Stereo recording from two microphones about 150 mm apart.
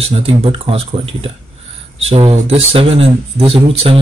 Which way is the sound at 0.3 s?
40° right (ahead or behind).